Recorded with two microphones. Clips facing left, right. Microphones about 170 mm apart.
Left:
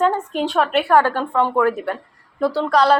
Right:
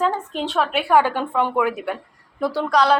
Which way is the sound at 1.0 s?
15° right (ahead or behind).